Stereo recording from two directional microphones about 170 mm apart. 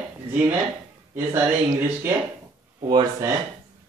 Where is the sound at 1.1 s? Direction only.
10° right (ahead or behind).